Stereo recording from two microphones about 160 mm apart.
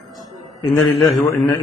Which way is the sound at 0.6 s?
20° left (ahead or behind).